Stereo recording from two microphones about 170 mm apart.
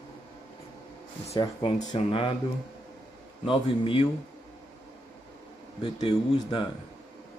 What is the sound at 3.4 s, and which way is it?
Speech, 30° left (ahead or behind).